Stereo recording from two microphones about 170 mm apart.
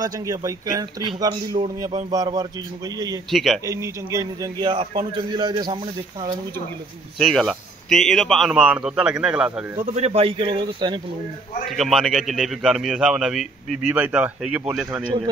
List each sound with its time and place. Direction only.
0.0 s a man's voice: 20° right (ahead or behind)
3.3 s a man's voice: centre (ahead or behind)
3.6 s a man's voice: 15° right (ahead or behind)
7.2 s a man's voice: centre (ahead or behind)
9.9 s speech: 40° right (ahead or behind)
11.7 s a man's voice: centre (ahead or behind)